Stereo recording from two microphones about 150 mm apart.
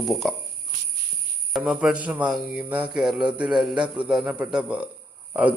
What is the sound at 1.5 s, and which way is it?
Speech, 5° right (ahead or behind).